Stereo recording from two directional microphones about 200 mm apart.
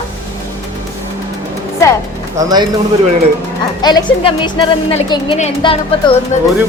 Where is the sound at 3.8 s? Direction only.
20° left (ahead or behind).